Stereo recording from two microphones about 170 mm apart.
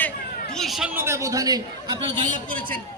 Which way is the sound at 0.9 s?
15° right (ahead or behind).